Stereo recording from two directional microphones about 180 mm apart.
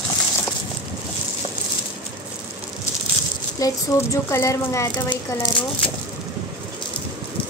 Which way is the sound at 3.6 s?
15° left (ahead or behind).